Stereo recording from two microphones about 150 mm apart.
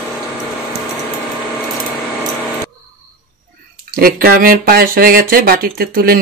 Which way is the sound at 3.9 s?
80° right.